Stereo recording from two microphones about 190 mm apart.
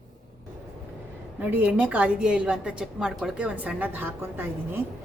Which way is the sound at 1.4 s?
10° right (ahead or behind).